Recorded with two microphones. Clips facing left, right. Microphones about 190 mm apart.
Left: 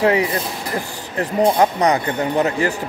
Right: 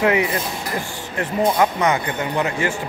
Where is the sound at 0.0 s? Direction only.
35° left (ahead or behind).